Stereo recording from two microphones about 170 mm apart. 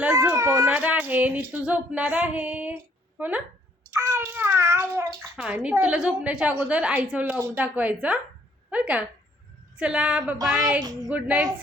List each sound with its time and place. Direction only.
0.0 s a woman's voice: 10° right (ahead or behind)
3.9 s child singing: 15° right (ahead or behind)
5.4 s a woman's voice: 5° right (ahead or behind)
10.4 s a sound: 5° right (ahead or behind)
11.1 s a woman's voice: 5° right (ahead or behind)